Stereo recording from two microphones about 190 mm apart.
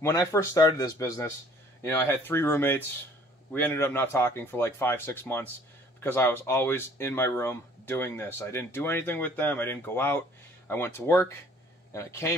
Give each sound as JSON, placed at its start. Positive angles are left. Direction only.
{"t": 0.0, "sound": "speech", "side_deg": 15}